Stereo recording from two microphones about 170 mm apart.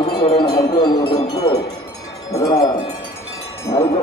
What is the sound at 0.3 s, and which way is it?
Wind chime, 25° left (ahead or behind).